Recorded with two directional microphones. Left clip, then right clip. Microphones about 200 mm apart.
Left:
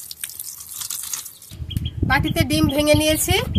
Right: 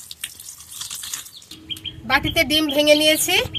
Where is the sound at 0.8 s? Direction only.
20° left (ahead or behind).